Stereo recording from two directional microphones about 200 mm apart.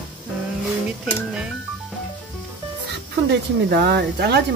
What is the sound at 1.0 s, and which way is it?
Speech, 5° right (ahead or behind).